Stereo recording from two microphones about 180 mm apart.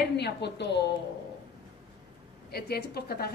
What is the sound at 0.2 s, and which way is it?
Speech, 70° left (ahead or behind).